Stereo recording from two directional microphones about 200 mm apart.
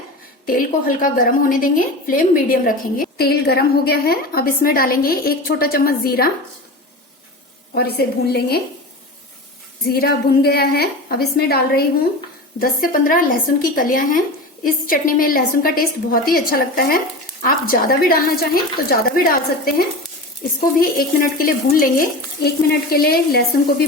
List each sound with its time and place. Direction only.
0.4 s a woman's voice: 45° left (ahead or behind)
7.7 s a woman's voice: 50° left (ahead or behind)
9.9 s a woman's voice: 50° left (ahead or behind)
20.6 s a woman's voice: 45° left (ahead or behind)